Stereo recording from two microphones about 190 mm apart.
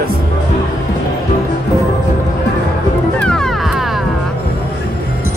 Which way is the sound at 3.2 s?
5° left (ahead or behind).